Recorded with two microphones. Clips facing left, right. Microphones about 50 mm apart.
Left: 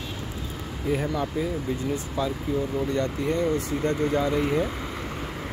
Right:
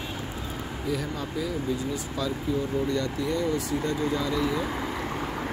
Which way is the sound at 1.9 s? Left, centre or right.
Left.